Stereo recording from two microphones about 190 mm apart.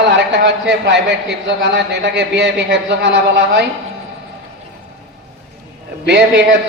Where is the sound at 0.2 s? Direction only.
65° right (ahead or behind).